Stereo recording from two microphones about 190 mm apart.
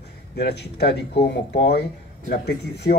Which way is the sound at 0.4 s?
60° left (ahead or behind).